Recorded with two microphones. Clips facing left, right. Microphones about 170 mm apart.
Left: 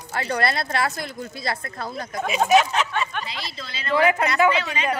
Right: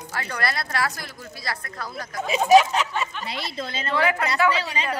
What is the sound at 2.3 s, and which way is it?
Speech, 35° right (ahead or behind).